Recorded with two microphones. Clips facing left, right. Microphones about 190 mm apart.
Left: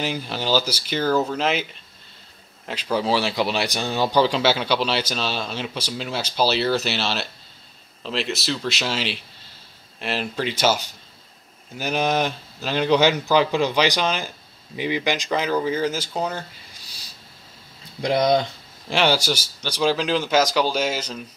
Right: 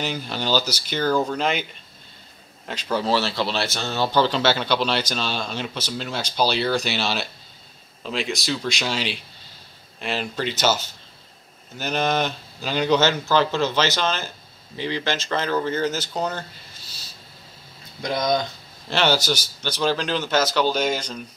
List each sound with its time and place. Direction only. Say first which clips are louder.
0.0 s speech: left 1 dB; 5° left (ahead or behind)
13.0 s speech: left 2 dB; 15° left (ahead or behind)
18.0 s speech: left 4 dB; 30° left (ahead or behind)
18.9 s speech: left 1 dB; 10° left (ahead or behind)